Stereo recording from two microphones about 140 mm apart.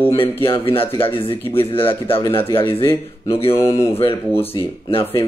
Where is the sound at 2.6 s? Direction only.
40° left (ahead or behind).